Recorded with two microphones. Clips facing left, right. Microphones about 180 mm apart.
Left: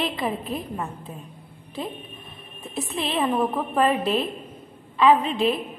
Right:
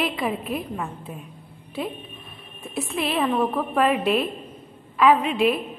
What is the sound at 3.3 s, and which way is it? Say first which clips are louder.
A woman's voice: right 1 dB; 5° left (ahead or behind).